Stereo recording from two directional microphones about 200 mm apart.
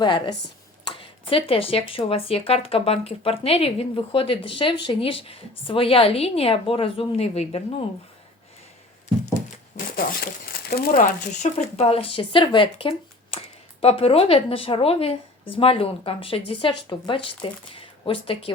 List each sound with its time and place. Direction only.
0.0 s speech: 20° left (ahead or behind)
9.3 s a sound: 45° left (ahead or behind)
11.5 s speech: 30° left (ahead or behind)